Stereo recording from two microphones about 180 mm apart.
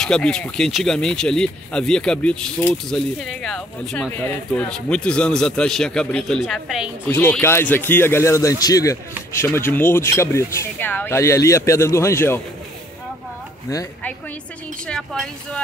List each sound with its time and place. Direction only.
0.0 s speech: 5° left (ahead or behind)
7.1 s speech: 10° left (ahead or behind)
13.7 s speech: 15° left (ahead or behind)
14.9 s speech: 5° left (ahead or behind)